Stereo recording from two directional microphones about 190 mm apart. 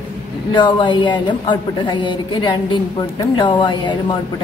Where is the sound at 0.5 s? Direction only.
25° left (ahead or behind).